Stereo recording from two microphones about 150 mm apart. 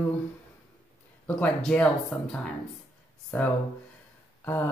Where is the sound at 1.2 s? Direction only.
10° left (ahead or behind).